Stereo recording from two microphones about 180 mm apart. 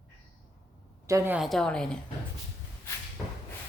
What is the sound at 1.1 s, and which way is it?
Speech, 15° right (ahead or behind).